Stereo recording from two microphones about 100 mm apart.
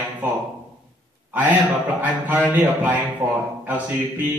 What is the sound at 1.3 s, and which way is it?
A man's voice, 15° right (ahead or behind).